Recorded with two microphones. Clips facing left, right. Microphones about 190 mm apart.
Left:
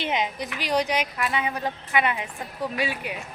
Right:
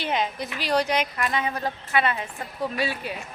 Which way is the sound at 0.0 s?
15° left (ahead or behind).